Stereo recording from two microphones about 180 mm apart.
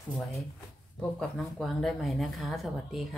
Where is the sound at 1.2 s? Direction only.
Centre (ahead or behind).